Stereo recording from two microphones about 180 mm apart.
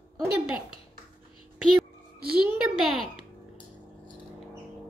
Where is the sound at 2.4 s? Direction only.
5° right (ahead or behind).